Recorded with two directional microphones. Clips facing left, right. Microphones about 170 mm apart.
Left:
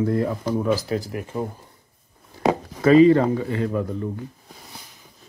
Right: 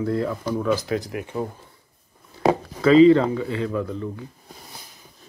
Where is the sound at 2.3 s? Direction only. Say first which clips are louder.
Right 1 dB; 50° left (ahead or behind).